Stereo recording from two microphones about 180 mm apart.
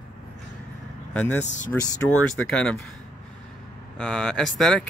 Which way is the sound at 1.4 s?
40° left (ahead or behind).